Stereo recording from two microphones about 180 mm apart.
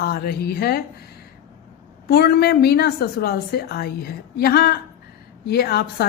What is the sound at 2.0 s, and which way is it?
A woman's voice, 60° left (ahead or behind).